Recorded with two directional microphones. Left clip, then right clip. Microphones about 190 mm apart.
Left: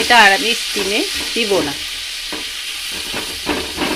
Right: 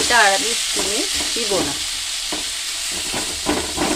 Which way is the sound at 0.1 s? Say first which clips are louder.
Left 6 dB; 20° left (ahead or behind).